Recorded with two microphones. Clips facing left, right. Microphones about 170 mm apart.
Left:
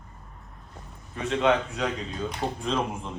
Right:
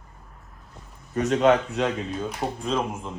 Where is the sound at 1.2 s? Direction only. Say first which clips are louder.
Right 4 dB; 40° right (ahead or behind).